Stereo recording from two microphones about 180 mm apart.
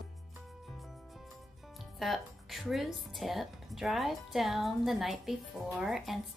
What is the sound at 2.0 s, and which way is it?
Speech, centre (ahead or behind).